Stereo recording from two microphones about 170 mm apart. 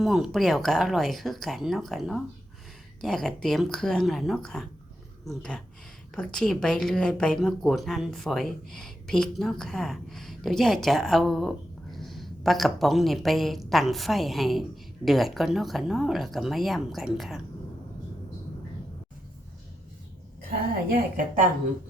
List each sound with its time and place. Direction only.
0.0 s a woman's voice: centre (ahead or behind)